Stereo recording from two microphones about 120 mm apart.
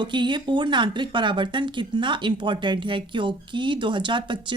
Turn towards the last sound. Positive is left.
turn(degrees=-40)  # may be behind; listen again after turning